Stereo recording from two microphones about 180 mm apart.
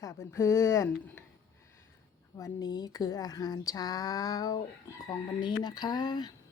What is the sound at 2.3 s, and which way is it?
Speech, 20° left (ahead or behind).